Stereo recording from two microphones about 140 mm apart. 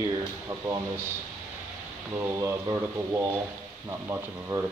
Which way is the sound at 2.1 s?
20° right (ahead or behind).